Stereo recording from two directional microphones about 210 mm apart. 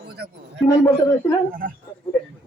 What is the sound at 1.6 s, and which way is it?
Speech, 40° right (ahead or behind).